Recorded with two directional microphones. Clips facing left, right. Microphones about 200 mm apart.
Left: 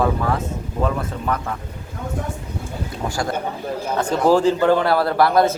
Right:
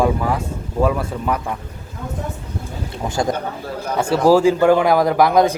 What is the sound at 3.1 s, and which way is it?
Speech, 20° right (ahead or behind).